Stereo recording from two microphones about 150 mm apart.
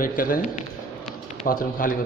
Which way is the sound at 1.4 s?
70° left (ahead or behind).